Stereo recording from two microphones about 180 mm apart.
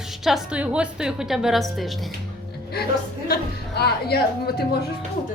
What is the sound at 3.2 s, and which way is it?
A woman's voice, 60° left (ahead or behind).